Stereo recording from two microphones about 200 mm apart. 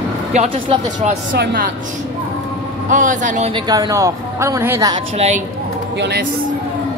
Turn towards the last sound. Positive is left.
turn(degrees=-55)  # may be behind; listen again after turning